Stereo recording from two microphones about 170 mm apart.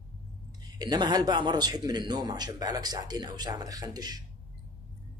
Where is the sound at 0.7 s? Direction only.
25° right (ahead or behind).